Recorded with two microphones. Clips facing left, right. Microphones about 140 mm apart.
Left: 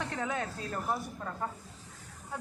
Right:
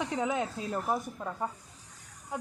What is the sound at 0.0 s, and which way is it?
A man's voice, 15° right (ahead or behind).